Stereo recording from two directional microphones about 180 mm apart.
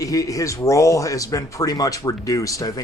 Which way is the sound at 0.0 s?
20° left (ahead or behind).